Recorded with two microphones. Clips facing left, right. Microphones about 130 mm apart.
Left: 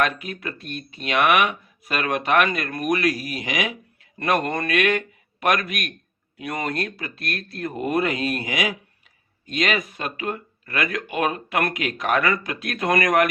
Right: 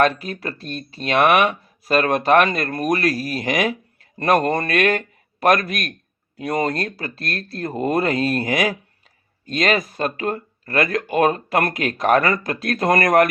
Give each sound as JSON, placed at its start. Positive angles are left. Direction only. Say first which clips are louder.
{"t": 0.0, "sound": "speech", "louder": "right 5 dB", "side_deg": -35}